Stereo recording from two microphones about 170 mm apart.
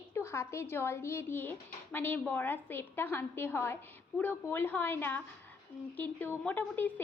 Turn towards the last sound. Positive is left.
turn(degrees=10)  # may be behind; listen again after turning